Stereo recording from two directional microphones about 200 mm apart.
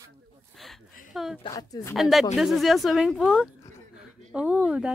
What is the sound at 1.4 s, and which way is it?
Speech, 20° left (ahead or behind).